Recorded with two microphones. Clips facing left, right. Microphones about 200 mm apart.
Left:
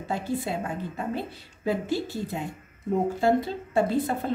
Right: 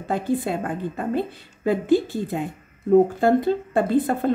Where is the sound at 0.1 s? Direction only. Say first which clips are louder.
Right 6 dB; 55° right (ahead or behind).